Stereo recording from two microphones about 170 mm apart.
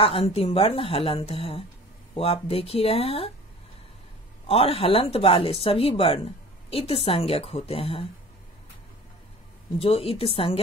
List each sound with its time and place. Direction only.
0.0 s speech: 35° left (ahead or behind)
4.5 s speech: 35° left (ahead or behind)
9.8 s speech: 35° left (ahead or behind)